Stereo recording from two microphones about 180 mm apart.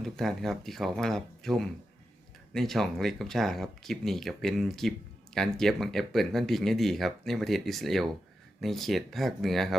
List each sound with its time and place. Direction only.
0.0 s speech: centre (ahead or behind)